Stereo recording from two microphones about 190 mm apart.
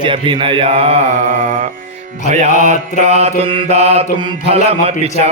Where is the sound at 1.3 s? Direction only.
45° right (ahead or behind).